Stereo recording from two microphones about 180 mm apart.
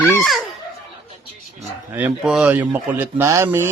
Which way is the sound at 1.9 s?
5° right (ahead or behind).